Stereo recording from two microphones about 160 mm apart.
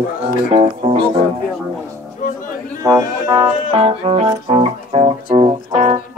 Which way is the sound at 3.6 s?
35° right (ahead or behind).